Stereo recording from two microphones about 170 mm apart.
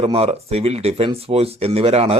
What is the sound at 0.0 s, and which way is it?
Speech, 35° right (ahead or behind).